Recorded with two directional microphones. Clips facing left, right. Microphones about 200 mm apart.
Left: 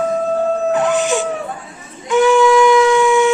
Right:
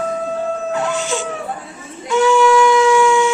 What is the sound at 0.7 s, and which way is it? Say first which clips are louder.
Howl: left 5 dB; 20° left (ahead or behind).